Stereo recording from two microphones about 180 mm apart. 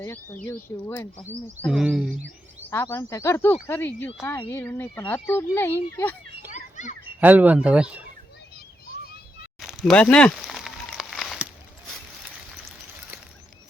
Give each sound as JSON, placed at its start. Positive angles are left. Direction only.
{"t": 0.0, "sound": "speech", "side_deg": 10}
{"t": 2.6, "sound": "speech", "side_deg": 15}
{"t": 6.5, "sound": "children playing", "side_deg": 40}
{"t": 7.2, "sound": "speech", "side_deg": -10}
{"t": 9.6, "sound": "a sound", "side_deg": 0}